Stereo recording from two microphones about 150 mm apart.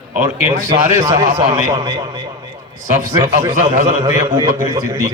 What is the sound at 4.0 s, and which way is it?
Speech, 30° right (ahead or behind).